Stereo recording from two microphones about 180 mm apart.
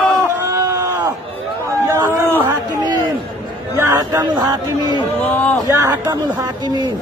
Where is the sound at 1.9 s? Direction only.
15° right (ahead or behind).